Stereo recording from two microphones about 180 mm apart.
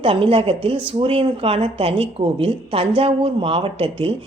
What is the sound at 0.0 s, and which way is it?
A woman's voice, 30° right (ahead or behind).